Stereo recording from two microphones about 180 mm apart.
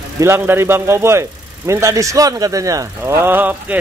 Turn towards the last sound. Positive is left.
turn(degrees=-10)  # may be behind; listen again after turning